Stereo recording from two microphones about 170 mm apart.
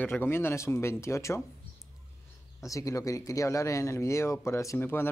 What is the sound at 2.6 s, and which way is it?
Speech, 20° left (ahead or behind).